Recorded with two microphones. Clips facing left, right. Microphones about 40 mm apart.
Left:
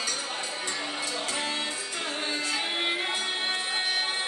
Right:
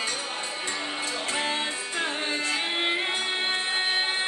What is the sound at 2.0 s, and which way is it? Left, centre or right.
Music, right.